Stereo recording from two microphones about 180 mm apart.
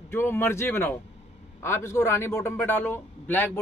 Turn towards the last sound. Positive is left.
turn(degrees=10)  # may be behind; listen again after turning